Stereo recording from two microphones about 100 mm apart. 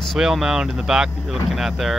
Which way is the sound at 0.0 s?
Centre (ahead or behind).